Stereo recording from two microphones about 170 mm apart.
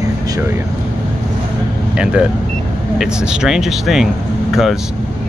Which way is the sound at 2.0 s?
5° right (ahead or behind).